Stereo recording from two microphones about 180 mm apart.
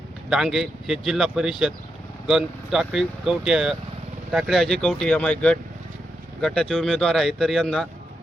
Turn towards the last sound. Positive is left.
turn(degrees=5)  # may be behind; listen again after turning